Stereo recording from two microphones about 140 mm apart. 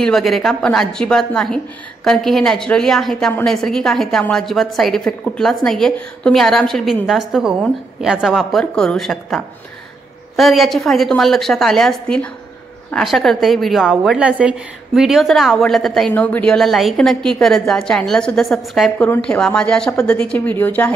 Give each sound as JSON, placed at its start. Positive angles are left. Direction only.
{"t": 0.0, "sound": "a woman's voice", "side_deg": 0}
{"t": 19.0, "sound": "speech", "side_deg": 15}